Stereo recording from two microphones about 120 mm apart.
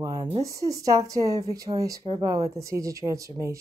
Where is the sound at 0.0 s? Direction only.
30° right (ahead or behind).